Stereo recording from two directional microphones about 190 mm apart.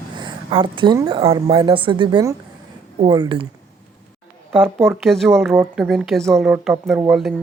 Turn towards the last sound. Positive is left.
turn(degrees=-5)  # may be behind; listen again after turning